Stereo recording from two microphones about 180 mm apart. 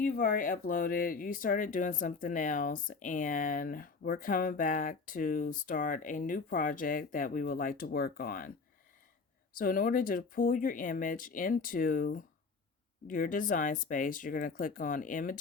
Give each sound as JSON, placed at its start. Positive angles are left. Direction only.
{"t": 0.0, "sound": "speech", "side_deg": 50}
{"t": 9.6, "sound": "speech", "side_deg": 50}